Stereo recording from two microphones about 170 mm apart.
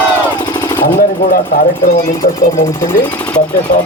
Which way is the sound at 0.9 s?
55° left (ahead or behind).